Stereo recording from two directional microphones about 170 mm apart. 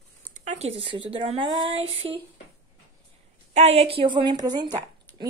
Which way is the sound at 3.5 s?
40° right (ahead or behind).